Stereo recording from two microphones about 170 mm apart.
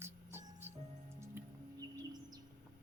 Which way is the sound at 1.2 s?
20° right (ahead or behind).